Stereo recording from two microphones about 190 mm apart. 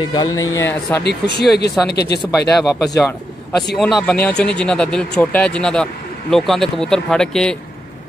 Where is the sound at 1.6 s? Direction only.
60° left (ahead or behind).